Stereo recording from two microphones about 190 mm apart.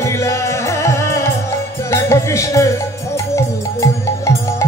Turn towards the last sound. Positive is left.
turn(degrees=15)  # may be behind; listen again after turning